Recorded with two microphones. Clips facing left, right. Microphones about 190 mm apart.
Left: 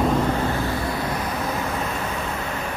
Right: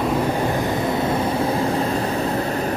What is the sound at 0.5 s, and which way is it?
Vehicle, 20° right (ahead or behind).